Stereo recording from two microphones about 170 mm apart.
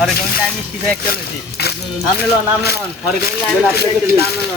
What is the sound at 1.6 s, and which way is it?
Music, 70° left (ahead or behind).